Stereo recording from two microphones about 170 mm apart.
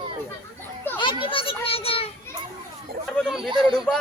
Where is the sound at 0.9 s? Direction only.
10° left (ahead or behind).